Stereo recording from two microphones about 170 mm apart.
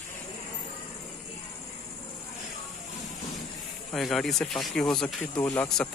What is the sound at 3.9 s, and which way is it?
Speech, centre (ahead or behind).